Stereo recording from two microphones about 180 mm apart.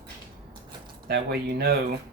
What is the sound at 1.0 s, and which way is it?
Speech, 60° right (ahead or behind).